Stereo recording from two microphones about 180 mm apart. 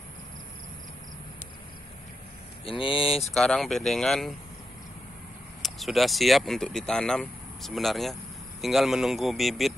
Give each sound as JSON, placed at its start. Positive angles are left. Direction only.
{"t": 2.6, "sound": "speech", "side_deg": 30}
{"t": 3.3, "sound": "speech", "side_deg": 0}
{"t": 5.6, "sound": "speech", "side_deg": 0}